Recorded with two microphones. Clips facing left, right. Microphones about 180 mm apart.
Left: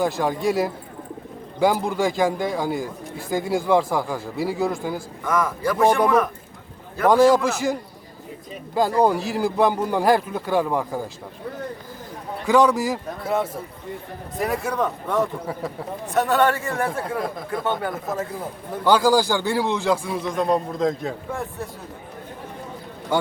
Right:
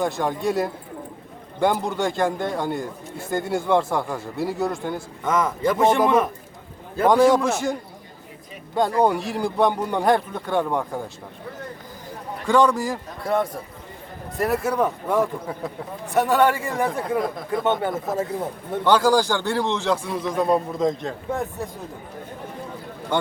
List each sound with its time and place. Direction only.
0.0 s a man's voice: centre (ahead or behind)
5.2 s speech: 20° right (ahead or behind)
7.1 s a man's voice: centre (ahead or behind)
9.0 s a man's voice: centre (ahead or behind)
12.5 s a man's voice: 5° left (ahead or behind); by 16.9 s 15° right (ahead or behind)
16.9 s a man's voice: centre (ahead or behind)
17.6 s speech: 25° right (ahead or behind)
18.9 s a man's voice: 5° left (ahead or behind)